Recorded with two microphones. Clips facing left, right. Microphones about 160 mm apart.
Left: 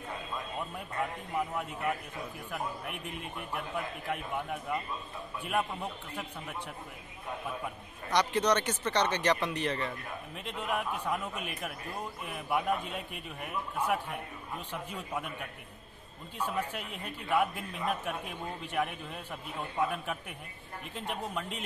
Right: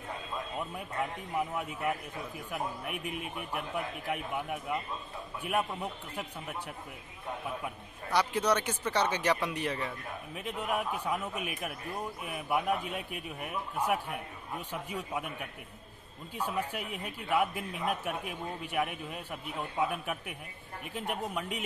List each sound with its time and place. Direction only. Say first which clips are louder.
2.5 s a man's voice: right 2 dB; 5° right (ahead or behind)
7.6 s a man's voice: even; 5° right (ahead or behind)
16.3 s a man's voice: even; 10° right (ahead or behind)